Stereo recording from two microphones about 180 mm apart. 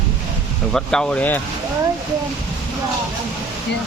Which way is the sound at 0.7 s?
5° left (ahead or behind).